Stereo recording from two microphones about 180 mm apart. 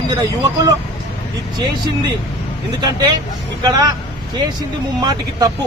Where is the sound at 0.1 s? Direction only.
25° right (ahead or behind).